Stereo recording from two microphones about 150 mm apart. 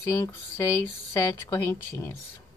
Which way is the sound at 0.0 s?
15° left (ahead or behind).